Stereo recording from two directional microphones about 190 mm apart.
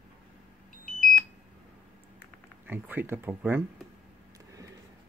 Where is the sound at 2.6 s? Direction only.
10° right (ahead or behind).